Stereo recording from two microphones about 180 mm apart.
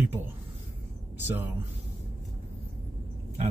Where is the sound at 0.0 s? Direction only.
10° right (ahead or behind).